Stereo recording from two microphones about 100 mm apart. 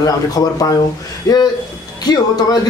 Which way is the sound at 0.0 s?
40° left (ahead or behind).